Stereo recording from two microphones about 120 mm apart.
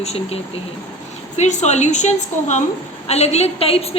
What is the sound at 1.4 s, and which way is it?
A woman's voice, 75° left (ahead or behind).